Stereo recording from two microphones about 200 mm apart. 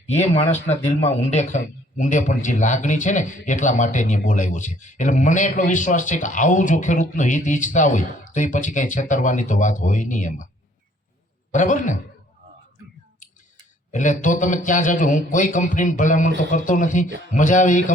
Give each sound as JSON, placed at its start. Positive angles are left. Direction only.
{"t": 0.1, "sound": "a man's voice", "side_deg": 35}
{"t": 11.5, "sound": "a man's voice", "side_deg": 40}
{"t": 13.9, "sound": "a man's voice", "side_deg": 40}